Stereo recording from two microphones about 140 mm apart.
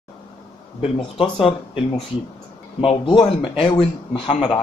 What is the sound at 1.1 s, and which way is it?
Speech, 40° left (ahead or behind).